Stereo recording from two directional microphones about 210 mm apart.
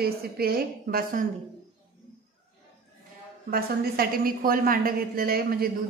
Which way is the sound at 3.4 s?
45° right (ahead or behind).